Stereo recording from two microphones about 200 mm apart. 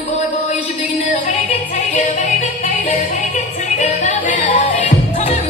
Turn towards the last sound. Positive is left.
turn(degrees=40)  # may be behind; listen again after turning